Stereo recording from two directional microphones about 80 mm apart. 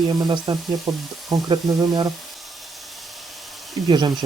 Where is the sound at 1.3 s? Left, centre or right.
Right.